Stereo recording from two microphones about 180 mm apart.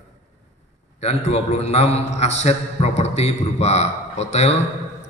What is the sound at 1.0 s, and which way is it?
A man's voice, 35° left (ahead or behind).